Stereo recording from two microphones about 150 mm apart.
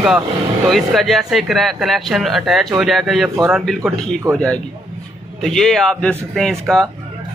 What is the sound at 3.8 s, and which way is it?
Speech, 15° right (ahead or behind).